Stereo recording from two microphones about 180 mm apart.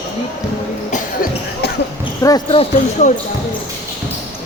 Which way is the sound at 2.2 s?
20° left (ahead or behind).